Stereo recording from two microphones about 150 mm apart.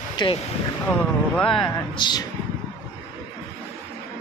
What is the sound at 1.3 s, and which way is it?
Speech, 5° left (ahead or behind).